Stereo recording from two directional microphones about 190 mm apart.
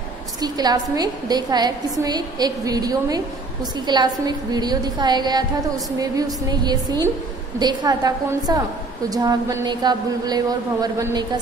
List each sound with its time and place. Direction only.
0.4 s a woman's voice: 20° right (ahead or behind)